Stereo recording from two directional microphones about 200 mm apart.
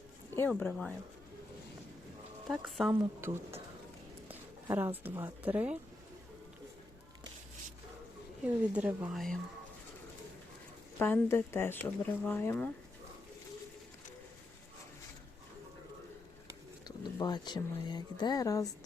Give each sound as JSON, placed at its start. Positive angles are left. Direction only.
{"t": 0.3, "sound": "speech", "side_deg": 10}
{"t": 2.5, "sound": "speech", "side_deg": 0}
{"t": 2.9, "sound": "speech", "side_deg": -10}
{"t": 8.4, "sound": "speech", "side_deg": -5}
{"t": 11.0, "sound": "speech", "side_deg": 10}
{"t": 16.8, "sound": "speech", "side_deg": 20}